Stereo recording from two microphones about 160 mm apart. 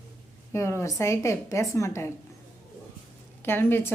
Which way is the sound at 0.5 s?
15° left (ahead or behind).